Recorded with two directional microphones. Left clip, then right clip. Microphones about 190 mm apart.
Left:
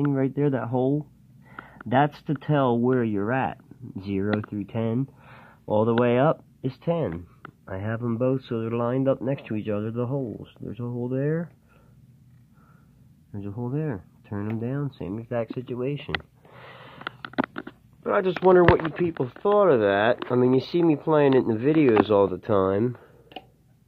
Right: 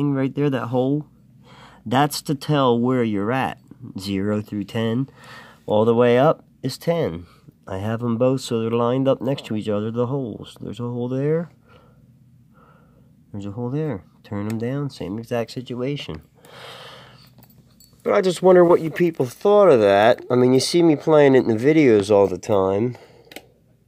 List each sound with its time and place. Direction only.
0.0 s speech: 25° right (ahead or behind)
13.3 s speech: 25° right (ahead or behind)